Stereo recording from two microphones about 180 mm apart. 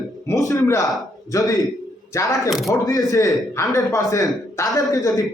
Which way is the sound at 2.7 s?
20° left (ahead or behind).